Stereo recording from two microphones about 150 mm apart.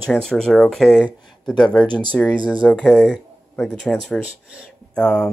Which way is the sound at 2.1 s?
10° left (ahead or behind).